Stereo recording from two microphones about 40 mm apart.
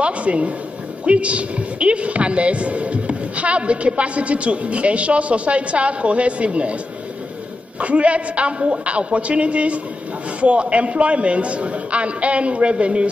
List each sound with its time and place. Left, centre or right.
0.0 s a man's voice: right
7.8 s a man's voice: right